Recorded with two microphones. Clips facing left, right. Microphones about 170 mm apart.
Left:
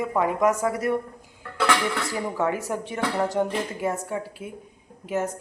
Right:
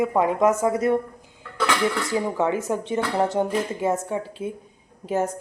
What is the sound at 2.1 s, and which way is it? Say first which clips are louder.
A woman's voice: right 3 dB; 20° right (ahead or behind).